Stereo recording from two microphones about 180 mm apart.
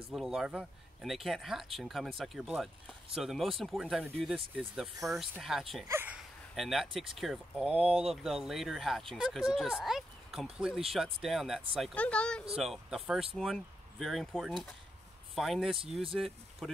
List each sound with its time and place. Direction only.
0.1 s speech: centre (ahead or behind)
15.8 s speech: 30° right (ahead or behind)
16.2 s speech: centre (ahead or behind)